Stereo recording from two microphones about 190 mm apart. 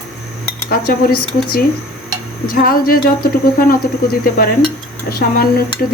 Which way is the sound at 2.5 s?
50° left (ahead or behind).